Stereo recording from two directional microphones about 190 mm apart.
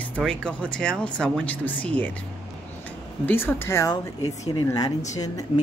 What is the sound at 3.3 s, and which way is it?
Speech, 10° left (ahead or behind).